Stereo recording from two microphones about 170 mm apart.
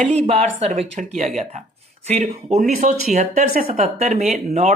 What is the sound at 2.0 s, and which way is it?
A woman's voice, 40° right (ahead or behind).